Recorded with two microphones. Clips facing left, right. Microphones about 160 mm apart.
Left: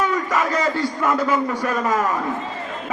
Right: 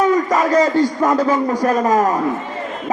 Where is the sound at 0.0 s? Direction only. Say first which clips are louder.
Right 6 dB; 35° right (ahead or behind).